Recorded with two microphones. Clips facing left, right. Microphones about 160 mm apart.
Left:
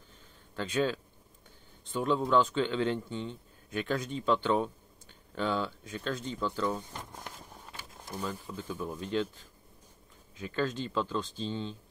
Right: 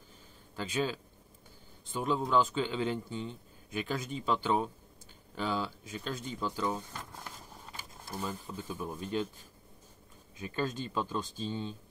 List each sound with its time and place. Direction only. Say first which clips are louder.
0.6 s speech: left 3 dB; 5° right (ahead or behind)
6.9 s speech: left 1 dB; 20° left (ahead or behind)
8.2 s speech: left 1 dB; 10° right (ahead or behind)
10.5 s speech: left 3 dB; 15° right (ahead or behind)